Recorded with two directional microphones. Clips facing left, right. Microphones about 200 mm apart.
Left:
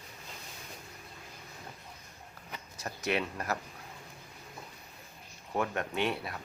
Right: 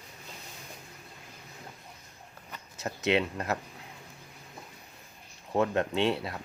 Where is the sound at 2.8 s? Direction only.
25° right (ahead or behind).